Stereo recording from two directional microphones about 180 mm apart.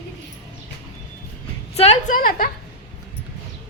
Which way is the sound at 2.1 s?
50° left (ahead or behind).